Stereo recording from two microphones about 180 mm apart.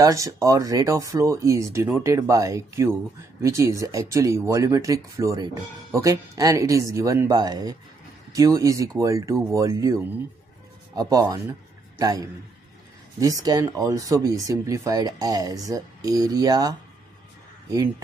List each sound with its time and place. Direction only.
0.0 s speech: 20° right (ahead or behind)